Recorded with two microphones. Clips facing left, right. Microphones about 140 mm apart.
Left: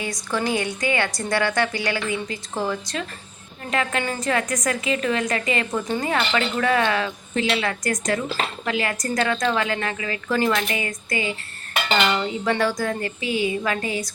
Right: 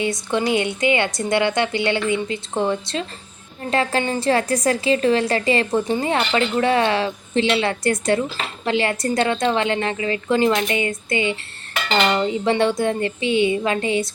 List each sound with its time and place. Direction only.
0.0 s a woman's voice: 25° right (ahead or behind)